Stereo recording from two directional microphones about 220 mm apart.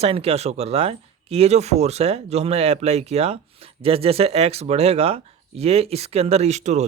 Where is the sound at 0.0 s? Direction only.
25° right (ahead or behind).